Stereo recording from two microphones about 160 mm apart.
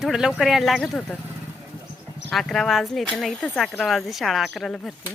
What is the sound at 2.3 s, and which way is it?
Speech, centre (ahead or behind).